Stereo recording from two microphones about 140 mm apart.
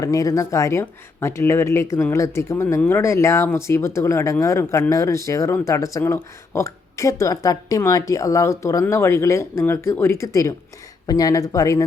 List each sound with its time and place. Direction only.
0.0 s speech: 25° left (ahead or behind)